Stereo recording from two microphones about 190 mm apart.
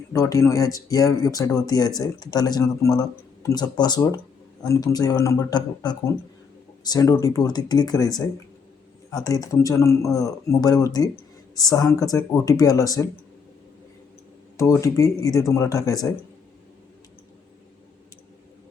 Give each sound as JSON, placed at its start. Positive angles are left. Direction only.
{"t": 0.1, "sound": "speech", "side_deg": 15}
{"t": 14.5, "sound": "speech", "side_deg": 15}